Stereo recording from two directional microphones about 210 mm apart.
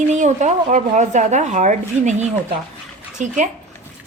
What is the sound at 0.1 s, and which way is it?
A woman's voice, 35° right (ahead or behind).